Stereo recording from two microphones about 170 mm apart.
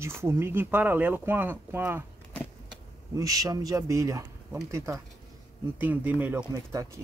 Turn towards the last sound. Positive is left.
turn(degrees=-15)  # may be behind; listen again after turning